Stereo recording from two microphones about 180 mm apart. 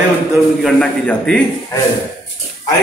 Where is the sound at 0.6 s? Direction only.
5° left (ahead or behind).